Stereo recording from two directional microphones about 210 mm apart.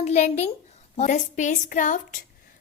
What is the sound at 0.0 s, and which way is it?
A woman's voice, 30° left (ahead or behind).